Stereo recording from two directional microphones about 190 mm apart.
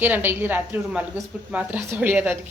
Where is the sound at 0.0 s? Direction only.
10° right (ahead or behind).